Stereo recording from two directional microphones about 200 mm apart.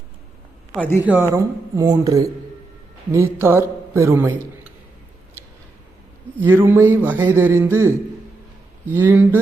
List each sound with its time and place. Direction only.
0.8 s speech: 10° left (ahead or behind)
1.3 s a man's voice: 15° right (ahead or behind)
6.4 s a man's voice: 10° right (ahead or behind)
9.0 s a man's voice: 10° right (ahead or behind)